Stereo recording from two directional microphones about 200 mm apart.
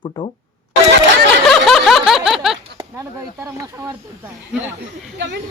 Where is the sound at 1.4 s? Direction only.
Centre (ahead or behind).